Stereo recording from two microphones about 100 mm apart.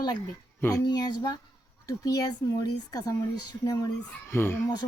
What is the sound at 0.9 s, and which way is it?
Speech, 45° left (ahead or behind).